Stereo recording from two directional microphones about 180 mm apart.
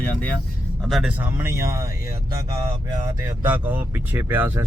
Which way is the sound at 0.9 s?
5° right (ahead or behind).